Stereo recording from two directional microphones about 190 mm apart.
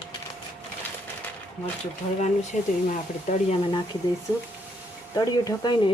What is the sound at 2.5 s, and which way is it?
Speech, 40° left (ahead or behind).